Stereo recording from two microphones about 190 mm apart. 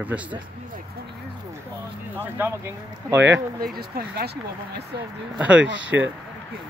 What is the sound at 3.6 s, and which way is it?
Speech, 50° right (ahead or behind).